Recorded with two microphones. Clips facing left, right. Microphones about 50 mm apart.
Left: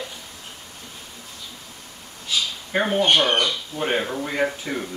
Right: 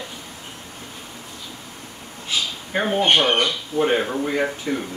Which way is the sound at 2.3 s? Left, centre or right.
Right.